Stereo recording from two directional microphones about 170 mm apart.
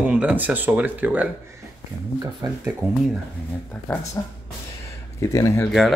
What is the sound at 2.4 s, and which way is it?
Speech, 25° right (ahead or behind).